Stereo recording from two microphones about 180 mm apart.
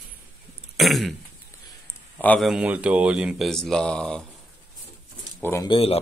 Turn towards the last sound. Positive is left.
turn(degrees=30)  # may be behind; listen again after turning